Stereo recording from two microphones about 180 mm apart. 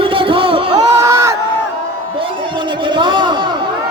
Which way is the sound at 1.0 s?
15° right (ahead or behind).